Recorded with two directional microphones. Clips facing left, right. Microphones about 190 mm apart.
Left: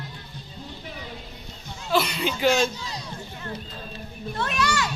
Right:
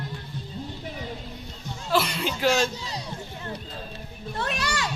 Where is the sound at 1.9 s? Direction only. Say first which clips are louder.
Left 1 dB; centre (ahead or behind).